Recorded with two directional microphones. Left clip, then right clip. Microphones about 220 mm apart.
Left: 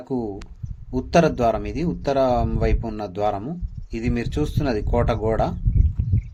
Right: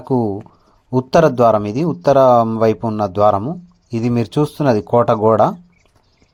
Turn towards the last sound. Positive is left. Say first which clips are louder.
# right 10 dB
turn(degrees=-30)  # may be behind; listen again after turning